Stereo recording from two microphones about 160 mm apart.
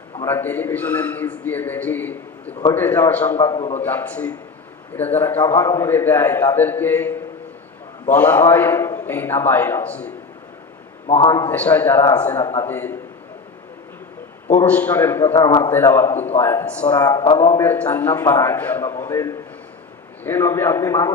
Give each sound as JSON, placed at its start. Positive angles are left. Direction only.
{"t": 0.3, "sound": "a man's voice", "side_deg": 15}
{"t": 3.5, "sound": "a man's voice", "side_deg": 30}
{"t": 3.8, "sound": "a man's voice", "side_deg": 10}
{"t": 11.2, "sound": "a man's voice", "side_deg": 25}
{"t": 11.5, "sound": "a man's voice", "side_deg": 10}
{"t": 14.5, "sound": "a man's voice", "side_deg": 10}
{"t": 17.0, "sound": "a man's voice", "side_deg": 25}